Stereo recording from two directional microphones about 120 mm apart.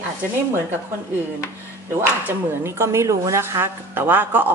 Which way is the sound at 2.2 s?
20° right (ahead or behind).